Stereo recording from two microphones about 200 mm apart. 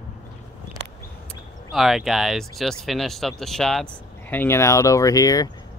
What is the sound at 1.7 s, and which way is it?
Speech, centre (ahead or behind).